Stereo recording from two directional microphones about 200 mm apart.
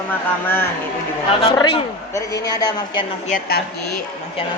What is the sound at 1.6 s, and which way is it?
A woman's voice, 25° left (ahead or behind).